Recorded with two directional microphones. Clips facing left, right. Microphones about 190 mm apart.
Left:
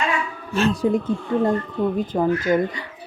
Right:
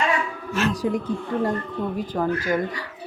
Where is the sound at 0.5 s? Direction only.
30° left (ahead or behind).